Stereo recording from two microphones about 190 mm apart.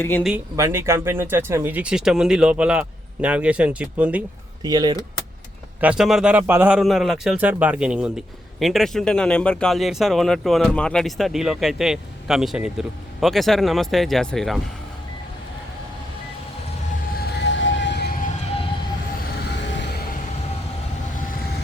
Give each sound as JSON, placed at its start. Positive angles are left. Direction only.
{"t": 0.2, "sound": "a man's voice", "side_deg": -5}
{"t": 4.6, "sound": "speech", "side_deg": -20}
{"t": 5.8, "sound": "a man's voice", "side_deg": -5}
{"t": 17.2, "sound": "vehicle", "side_deg": 65}
{"t": 19.4, "sound": "music", "side_deg": 70}